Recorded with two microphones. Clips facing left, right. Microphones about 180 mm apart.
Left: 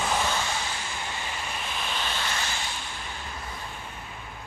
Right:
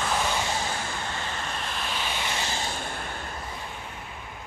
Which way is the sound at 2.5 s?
35° right (ahead or behind).